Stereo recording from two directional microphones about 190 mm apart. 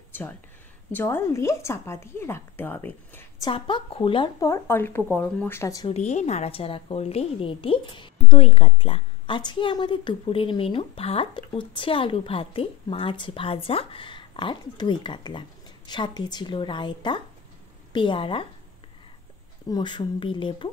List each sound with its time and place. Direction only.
0.1 s a sound: 10° left (ahead or behind)
0.9 s a woman's voice: 15° left (ahead or behind)
3.4 s a woman's voice: 25° left (ahead or behind)
5.9 s a woman's voice: 35° left (ahead or behind)
19.7 s a woman's voice: 25° left (ahead or behind)